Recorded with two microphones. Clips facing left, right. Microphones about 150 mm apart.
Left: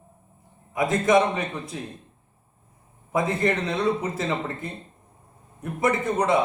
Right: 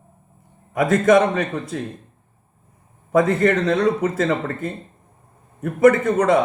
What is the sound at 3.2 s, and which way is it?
A man's voice, 50° right (ahead or behind).